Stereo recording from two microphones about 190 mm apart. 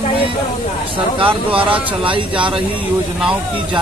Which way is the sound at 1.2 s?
25° right (ahead or behind).